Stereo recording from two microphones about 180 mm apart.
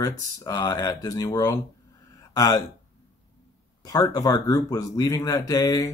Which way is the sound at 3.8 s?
20° left (ahead or behind).